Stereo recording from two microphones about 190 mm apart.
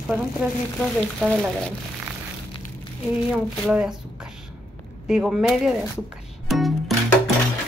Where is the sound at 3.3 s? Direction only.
5° right (ahead or behind).